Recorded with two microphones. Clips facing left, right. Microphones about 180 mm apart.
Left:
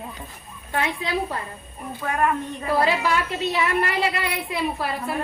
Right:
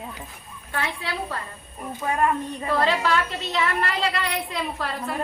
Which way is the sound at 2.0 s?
15° right (ahead or behind).